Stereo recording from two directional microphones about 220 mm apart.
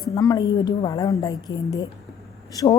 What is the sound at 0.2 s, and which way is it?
A woman's voice, 15° left (ahead or behind).